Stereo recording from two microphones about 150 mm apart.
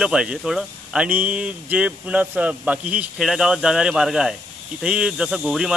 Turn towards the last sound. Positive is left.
turn(degrees=-5)  # may be behind; listen again after turning